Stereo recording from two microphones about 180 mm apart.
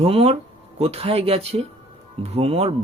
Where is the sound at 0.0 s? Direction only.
35° right (ahead or behind).